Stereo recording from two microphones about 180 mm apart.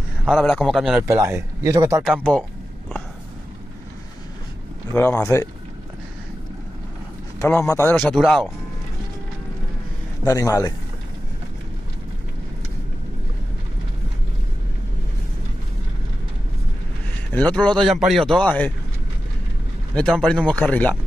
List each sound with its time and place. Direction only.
0.2 s speech: centre (ahead or behind)
1.0 s speech: 15° right (ahead or behind)
4.9 s speech: 15° left (ahead or behind)
7.3 s speech: 15° left (ahead or behind)
7.9 s speech: 5° left (ahead or behind)
10.2 s speech: 20° left (ahead or behind)
17.3 s speech: 10° left (ahead or behind)
20.0 s speech: 5° left (ahead or behind)